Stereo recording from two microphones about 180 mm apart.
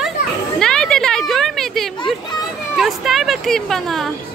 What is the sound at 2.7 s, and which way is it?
Speech, centre (ahead or behind).